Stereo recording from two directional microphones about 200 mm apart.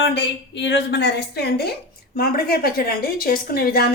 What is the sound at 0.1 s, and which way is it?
A woman's voice, 60° left (ahead or behind).